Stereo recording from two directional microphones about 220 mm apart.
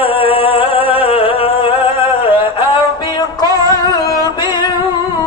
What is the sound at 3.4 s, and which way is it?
Music, 15° right (ahead or behind).